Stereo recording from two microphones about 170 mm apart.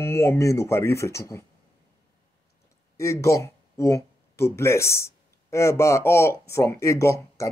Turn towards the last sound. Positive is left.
turn(degrees=15)  # may be behind; listen again after turning